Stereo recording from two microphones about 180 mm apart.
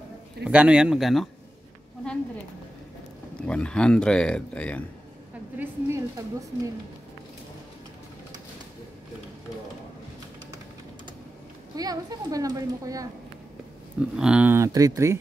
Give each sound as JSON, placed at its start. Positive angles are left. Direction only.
{"t": 0.4, "sound": "speech", "side_deg": -5}
{"t": 3.3, "sound": "speech", "side_deg": 5}
{"t": 5.6, "sound": "speech", "side_deg": -15}
{"t": 11.7, "sound": "a child's voice", "side_deg": -20}
{"t": 13.9, "sound": "speech", "side_deg": -5}